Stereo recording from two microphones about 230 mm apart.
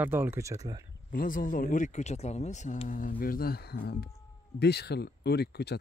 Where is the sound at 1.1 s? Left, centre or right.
Left.